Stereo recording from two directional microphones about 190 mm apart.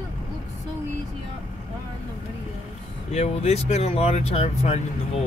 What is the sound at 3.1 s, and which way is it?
Speech, 35° left (ahead or behind).